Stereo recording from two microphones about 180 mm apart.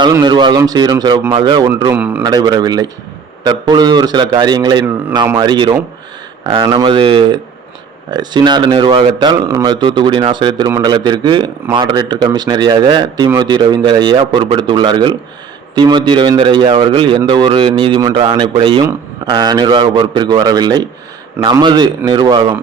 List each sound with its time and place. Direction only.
0.0 s speech: 25° right (ahead or behind)
1.8 s a man's voice: 15° right (ahead or behind)